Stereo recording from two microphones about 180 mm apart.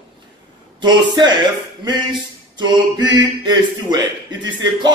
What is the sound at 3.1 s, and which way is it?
Speech, 20° right (ahead or behind).